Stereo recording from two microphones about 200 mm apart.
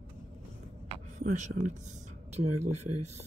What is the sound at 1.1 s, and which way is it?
Speech, 40° right (ahead or behind).